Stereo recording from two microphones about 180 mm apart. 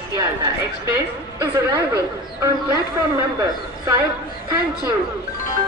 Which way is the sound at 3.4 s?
20° right (ahead or behind).